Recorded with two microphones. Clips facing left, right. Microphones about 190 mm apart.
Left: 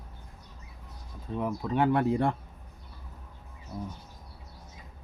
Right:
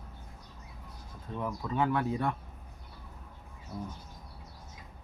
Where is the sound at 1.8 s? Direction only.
30° left (ahead or behind).